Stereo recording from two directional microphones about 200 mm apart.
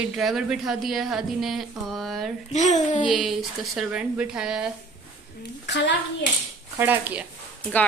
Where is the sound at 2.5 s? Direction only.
35° left (ahead or behind).